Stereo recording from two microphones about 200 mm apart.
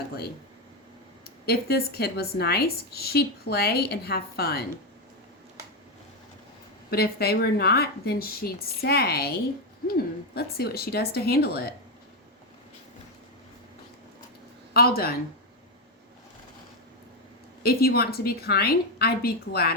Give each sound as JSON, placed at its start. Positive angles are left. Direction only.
{"t": 1.5, "sound": "a woman's voice", "side_deg": 50}
{"t": 6.9, "sound": "a woman's voice", "side_deg": 50}
{"t": 14.7, "sound": "speech", "side_deg": 50}
{"t": 17.6, "sound": "a woman's voice", "side_deg": 50}